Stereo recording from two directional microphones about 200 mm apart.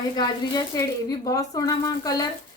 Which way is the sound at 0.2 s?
20° left (ahead or behind).